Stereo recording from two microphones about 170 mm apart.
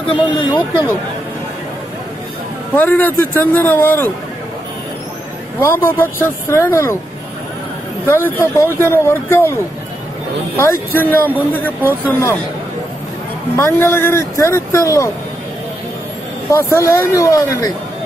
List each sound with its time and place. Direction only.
0.0 s speech: 25° left (ahead or behind)
0.6 s speech: 15° right (ahead or behind)
2.7 s speech: 10° left (ahead or behind)
5.6 s speech: 10° left (ahead or behind)
8.1 s speech: 10° left (ahead or behind)
11.8 s speech: 10° right (ahead or behind)
12.1 s speech: 15° left (ahead or behind)
13.7 s speech: 15° left (ahead or behind)
16.5 s speech: 15° left (ahead or behind)